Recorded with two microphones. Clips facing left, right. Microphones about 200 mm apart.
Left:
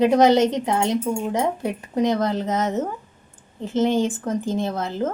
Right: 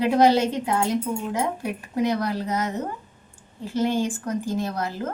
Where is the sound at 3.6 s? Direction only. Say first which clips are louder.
Left 3 dB; 20° left (ahead or behind).